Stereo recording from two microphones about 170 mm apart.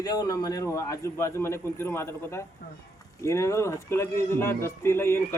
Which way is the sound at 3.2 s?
15° left (ahead or behind).